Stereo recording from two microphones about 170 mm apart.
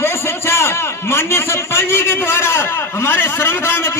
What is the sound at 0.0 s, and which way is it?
A man's voice, 15° left (ahead or behind).